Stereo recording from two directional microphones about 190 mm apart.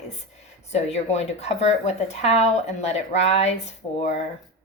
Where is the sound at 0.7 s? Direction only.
35° left (ahead or behind).